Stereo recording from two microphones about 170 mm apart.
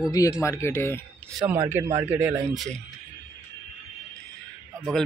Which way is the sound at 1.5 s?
15° right (ahead or behind).